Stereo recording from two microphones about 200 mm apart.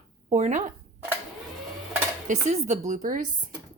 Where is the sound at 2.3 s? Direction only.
35° right (ahead or behind).